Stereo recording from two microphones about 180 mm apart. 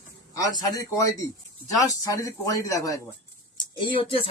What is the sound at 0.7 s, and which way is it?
Speech, 20° left (ahead or behind).